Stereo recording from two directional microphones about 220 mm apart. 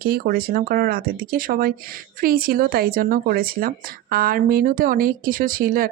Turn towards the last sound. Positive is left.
turn(degrees=-40)  # may be behind; listen again after turning